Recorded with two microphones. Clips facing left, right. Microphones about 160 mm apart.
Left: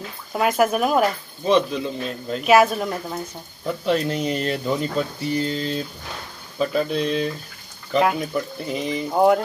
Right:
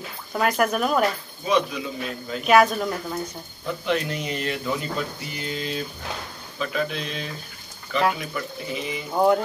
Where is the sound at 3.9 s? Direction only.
35° left (ahead or behind).